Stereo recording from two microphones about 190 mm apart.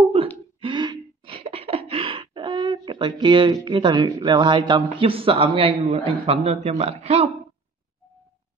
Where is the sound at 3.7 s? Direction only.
25° right (ahead or behind).